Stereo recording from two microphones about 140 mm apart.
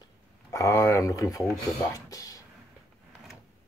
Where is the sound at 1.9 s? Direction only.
25° left (ahead or behind).